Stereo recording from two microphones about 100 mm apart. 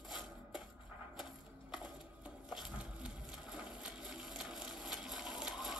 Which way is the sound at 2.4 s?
10° right (ahead or behind).